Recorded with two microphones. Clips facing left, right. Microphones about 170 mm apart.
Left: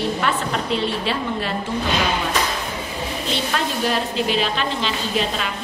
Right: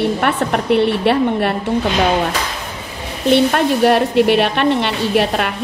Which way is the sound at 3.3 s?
60° right (ahead or behind).